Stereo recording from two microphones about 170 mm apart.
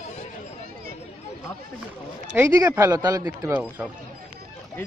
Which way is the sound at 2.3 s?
15° right (ahead or behind).